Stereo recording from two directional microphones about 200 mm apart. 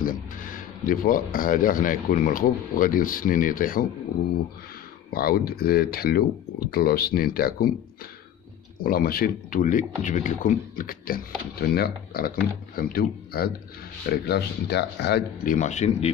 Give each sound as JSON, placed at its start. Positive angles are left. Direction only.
{"t": 0.0, "sound": "speech", "side_deg": 45}
{"t": 5.1, "sound": "speech", "side_deg": 50}
{"t": 8.7, "sound": "speech", "side_deg": 45}